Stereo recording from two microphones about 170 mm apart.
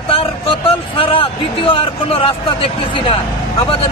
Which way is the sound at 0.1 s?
30° left (ahead or behind).